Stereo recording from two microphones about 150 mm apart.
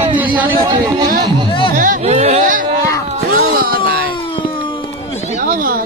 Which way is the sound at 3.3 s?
75° right (ahead or behind).